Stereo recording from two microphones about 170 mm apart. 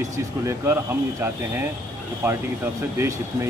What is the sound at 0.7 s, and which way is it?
A man's voice, 15° right (ahead or behind).